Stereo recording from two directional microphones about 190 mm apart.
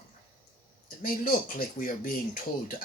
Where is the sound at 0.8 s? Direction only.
45° left (ahead or behind).